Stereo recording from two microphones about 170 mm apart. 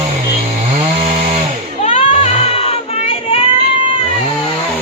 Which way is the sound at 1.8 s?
40° left (ahead or behind).